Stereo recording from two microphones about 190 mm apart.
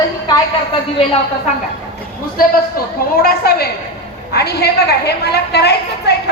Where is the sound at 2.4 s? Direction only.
50° left (ahead or behind).